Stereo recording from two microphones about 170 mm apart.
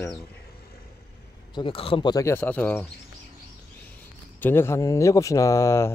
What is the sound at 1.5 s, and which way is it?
Speech, 30° left (ahead or behind).